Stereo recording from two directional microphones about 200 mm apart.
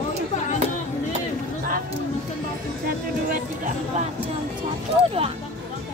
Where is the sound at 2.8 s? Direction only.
40° right (ahead or behind).